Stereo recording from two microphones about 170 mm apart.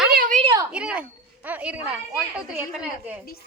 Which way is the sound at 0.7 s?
5° right (ahead or behind).